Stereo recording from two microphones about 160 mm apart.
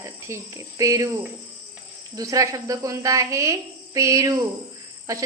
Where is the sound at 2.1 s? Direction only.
20° right (ahead or behind).